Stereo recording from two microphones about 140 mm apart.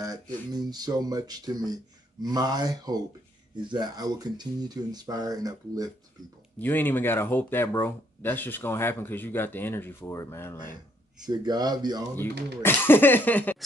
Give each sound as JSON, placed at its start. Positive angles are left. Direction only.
{"t": 0.0, "sound": "speech", "side_deg": -25}
{"t": 6.6, "sound": "speech", "side_deg": 15}
{"t": 11.2, "sound": "speech", "side_deg": -30}
{"t": 12.2, "sound": "speech", "side_deg": 15}